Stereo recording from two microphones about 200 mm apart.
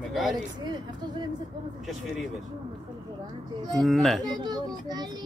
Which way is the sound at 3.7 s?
Centre (ahead or behind).